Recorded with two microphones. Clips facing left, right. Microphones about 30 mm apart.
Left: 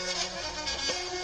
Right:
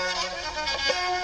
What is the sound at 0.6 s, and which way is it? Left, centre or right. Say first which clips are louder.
Music: right 8 dB; right.